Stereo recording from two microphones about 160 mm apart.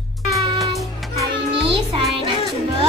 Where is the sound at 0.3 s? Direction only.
Centre (ahead or behind).